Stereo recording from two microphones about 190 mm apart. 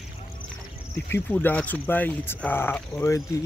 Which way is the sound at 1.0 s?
10° left (ahead or behind).